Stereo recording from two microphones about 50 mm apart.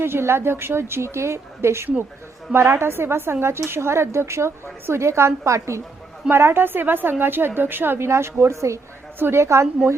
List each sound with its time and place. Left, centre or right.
0.0 s a woman's voice: right
5.5 s a woman's voice: right
6.3 s a woman's voice: right
9.1 s a woman's voice: right
9.4 s a woman's voice: right